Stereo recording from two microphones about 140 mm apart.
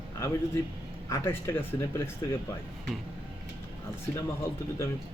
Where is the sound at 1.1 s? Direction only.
20° left (ahead or behind).